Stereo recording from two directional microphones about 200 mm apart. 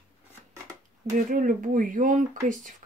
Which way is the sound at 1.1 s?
40° right (ahead or behind).